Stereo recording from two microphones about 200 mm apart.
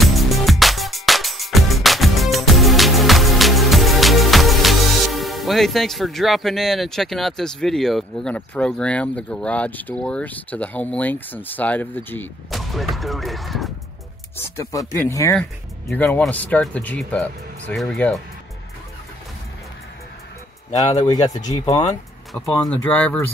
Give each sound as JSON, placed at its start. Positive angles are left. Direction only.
{"t": 0.0, "sound": "music", "side_deg": 0}
{"t": 12.4, "sound": "speech", "side_deg": 0}
{"t": 14.3, "sound": "speech", "side_deg": 15}
{"t": 21.0, "sound": "speech", "side_deg": 20}
{"t": 21.4, "sound": "speech", "side_deg": 35}
{"t": 22.3, "sound": "speech", "side_deg": 5}